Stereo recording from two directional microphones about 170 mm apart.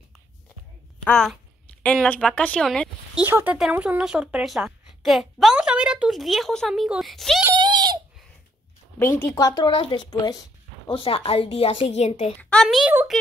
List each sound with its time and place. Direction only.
1.0 s a woman's voice: 5° left (ahead or behind)
3.2 s speech: 10° right (ahead or behind)
7.5 s a sound: 25° right (ahead or behind)
9.2 s a woman's voice: 20° left (ahead or behind); by 12.3 s 40° left (ahead or behind)
12.4 s a sound: 10° left (ahead or behind)
12.6 s speech: 5° right (ahead or behind)